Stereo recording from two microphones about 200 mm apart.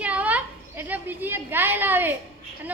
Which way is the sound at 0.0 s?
5° right (ahead or behind).